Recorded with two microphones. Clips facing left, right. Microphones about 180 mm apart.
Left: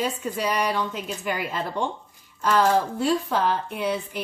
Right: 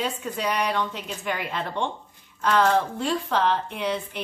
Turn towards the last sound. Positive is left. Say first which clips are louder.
# left 1 dB
turn(degrees=5)  # may be behind; listen again after turning